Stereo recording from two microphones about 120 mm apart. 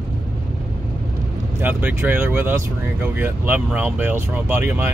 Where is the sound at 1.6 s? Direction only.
15° right (ahead or behind).